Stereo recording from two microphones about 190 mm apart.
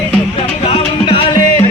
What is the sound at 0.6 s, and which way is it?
Music, 30° left (ahead or behind).